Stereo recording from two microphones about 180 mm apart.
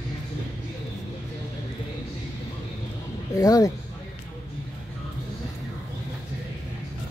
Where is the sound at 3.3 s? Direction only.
20° left (ahead or behind).